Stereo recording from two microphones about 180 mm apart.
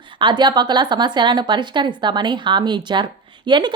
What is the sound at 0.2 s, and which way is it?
A woman's voice, 25° right (ahead or behind).